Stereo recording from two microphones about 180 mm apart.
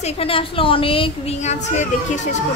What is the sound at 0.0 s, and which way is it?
Speech, 30° left (ahead or behind).